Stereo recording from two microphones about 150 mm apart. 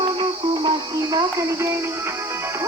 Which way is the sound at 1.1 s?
20° right (ahead or behind).